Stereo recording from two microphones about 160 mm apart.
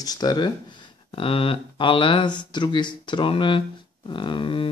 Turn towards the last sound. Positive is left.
turn(degrees=30)  # may be behind; listen again after turning